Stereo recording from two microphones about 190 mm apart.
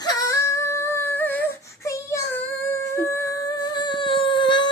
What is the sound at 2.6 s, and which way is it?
Humming, 15° left (ahead or behind).